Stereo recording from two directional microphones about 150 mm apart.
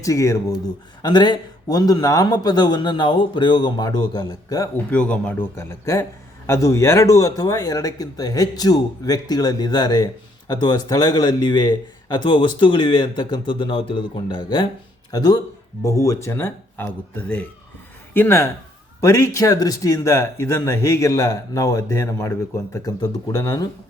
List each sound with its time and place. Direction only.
0.0 s speech: 20° left (ahead or behind)
4.9 s speech: 10° left (ahead or behind)